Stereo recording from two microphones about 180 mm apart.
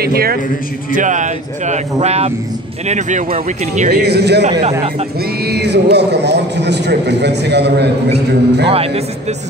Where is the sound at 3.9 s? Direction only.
65° right (ahead or behind).